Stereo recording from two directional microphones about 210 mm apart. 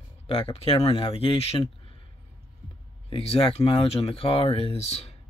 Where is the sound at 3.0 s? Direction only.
25° left (ahead or behind).